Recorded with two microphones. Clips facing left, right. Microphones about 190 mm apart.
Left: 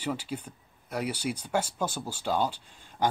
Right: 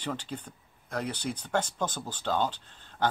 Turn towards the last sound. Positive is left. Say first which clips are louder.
# left 1 dB
turn(degrees=10)  # may be behind; listen again after turning